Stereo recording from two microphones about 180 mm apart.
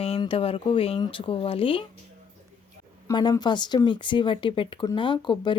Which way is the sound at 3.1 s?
20° left (ahead or behind).